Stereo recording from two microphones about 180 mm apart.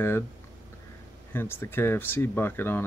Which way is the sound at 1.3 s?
10° left (ahead or behind).